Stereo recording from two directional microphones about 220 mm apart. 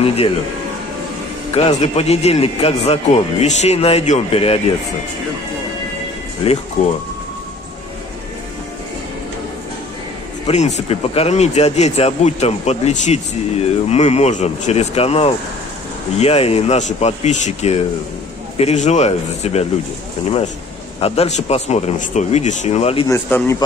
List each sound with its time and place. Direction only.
0.0 s a man's voice: 25° left (ahead or behind)
1.5 s a man's voice: 30° left (ahead or behind)
6.4 s a man's voice: 25° left (ahead or behind)
10.4 s a man's voice: 30° left (ahead or behind)
21.0 s a man's voice: 30° left (ahead or behind)
23.0 s a man's voice: 10° left (ahead or behind)